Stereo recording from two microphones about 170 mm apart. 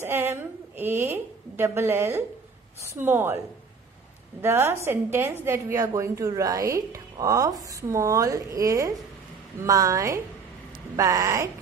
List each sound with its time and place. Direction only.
0.0 s a woman's voice: 15° right (ahead or behind)
4.4 s a woman's voice: 15° right (ahead or behind)